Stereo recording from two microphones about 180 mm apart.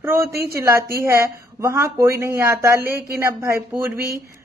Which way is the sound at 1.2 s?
15° right (ahead or behind).